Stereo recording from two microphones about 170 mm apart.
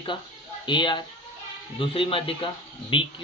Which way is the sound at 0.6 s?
25° left (ahead or behind).